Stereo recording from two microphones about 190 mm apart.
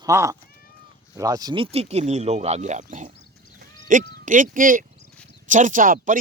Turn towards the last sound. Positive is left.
turn(degrees=-45)  # may be behind; listen again after turning